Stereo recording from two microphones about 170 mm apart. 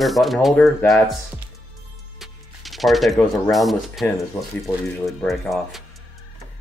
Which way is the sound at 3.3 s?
Centre (ahead or behind).